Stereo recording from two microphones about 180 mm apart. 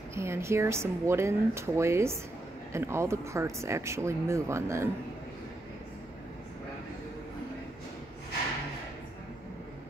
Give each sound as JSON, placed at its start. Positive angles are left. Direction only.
{"t": 0.1, "sound": "speech", "side_deg": -15}